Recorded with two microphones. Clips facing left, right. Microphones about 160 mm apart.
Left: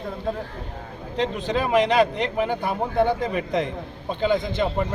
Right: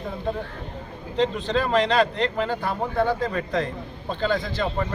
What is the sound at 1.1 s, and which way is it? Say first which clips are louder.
Speech: right 1 dB; 10° left (ahead or behind).